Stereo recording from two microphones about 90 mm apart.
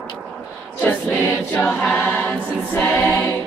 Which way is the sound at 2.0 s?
20° left (ahead or behind).